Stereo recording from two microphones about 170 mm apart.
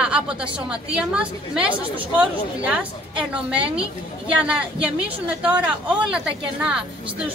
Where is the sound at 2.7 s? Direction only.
5° right (ahead or behind).